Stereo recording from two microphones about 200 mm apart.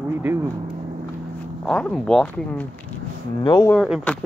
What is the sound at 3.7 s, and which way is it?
Speech, centre (ahead or behind).